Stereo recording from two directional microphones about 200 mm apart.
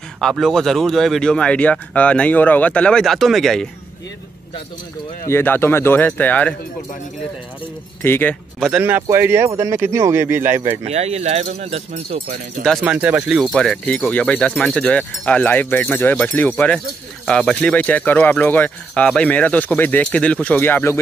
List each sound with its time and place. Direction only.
0.2 s speech: centre (ahead or behind)
5.2 s speech: 10° left (ahead or behind)
8.0 s speech: 10° left (ahead or behind)
8.6 s speech: 5° right (ahead or behind)
10.9 s speech: 35° right (ahead or behind)
12.6 s speech: 5° right (ahead or behind)